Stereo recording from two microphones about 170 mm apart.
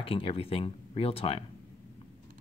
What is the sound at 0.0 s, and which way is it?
Speech, 35° left (ahead or behind).